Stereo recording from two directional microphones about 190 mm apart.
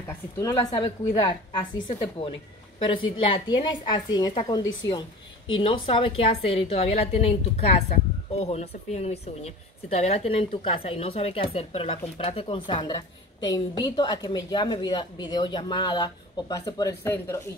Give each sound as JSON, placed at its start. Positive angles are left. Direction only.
{"t": 0.4, "sound": "a woman's voice", "side_deg": 20}
{"t": 5.6, "sound": "a woman's voice", "side_deg": 30}